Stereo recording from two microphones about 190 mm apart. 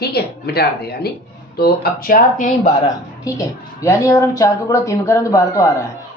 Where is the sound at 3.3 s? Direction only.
15° left (ahead or behind).